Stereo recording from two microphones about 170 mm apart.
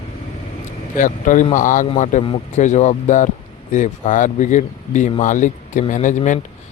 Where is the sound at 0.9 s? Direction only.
50° left (ahead or behind).